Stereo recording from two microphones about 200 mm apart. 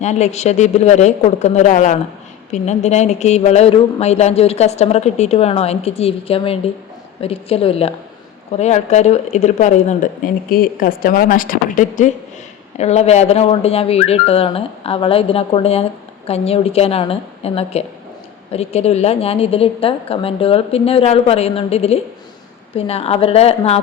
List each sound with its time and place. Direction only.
0.0 s speech: 35° left (ahead or behind)